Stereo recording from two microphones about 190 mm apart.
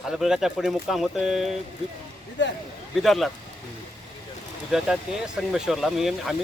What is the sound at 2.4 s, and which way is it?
Speech, 70° left (ahead or behind).